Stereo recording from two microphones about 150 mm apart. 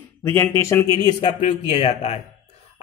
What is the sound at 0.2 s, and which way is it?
Speech, 15° left (ahead or behind).